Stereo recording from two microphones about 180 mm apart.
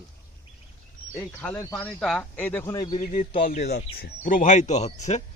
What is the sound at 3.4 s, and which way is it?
Speech, 45° left (ahead or behind).